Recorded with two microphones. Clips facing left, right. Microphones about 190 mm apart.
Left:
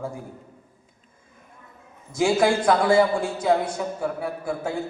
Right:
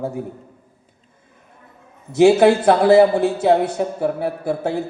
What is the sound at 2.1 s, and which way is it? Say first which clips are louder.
A man's voice: right 8 dB; 70° right (ahead or behind).